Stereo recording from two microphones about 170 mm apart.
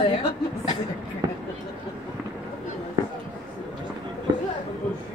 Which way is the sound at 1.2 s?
20° right (ahead or behind).